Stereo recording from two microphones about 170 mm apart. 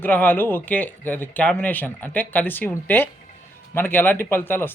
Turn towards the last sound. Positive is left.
turn(degrees=15)  # may be behind; listen again after turning